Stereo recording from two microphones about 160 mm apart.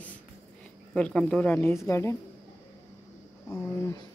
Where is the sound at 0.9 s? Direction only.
5° left (ahead or behind).